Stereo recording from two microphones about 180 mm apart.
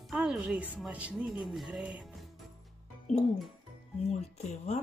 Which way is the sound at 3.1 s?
35° left (ahead or behind).